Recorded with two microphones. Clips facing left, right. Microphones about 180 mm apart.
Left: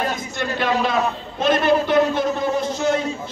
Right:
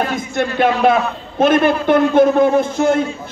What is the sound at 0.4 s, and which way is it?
A man's voice, 55° right (ahead or behind).